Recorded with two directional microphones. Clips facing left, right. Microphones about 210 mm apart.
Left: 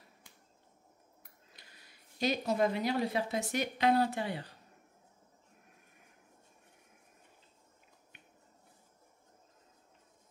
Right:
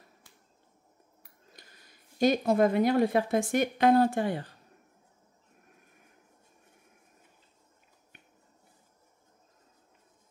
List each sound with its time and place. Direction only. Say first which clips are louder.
1.5 s speech: right 6 dB; 45° right (ahead or behind)